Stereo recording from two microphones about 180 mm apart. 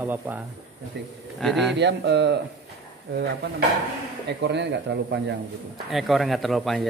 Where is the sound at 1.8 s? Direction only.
70° right (ahead or behind).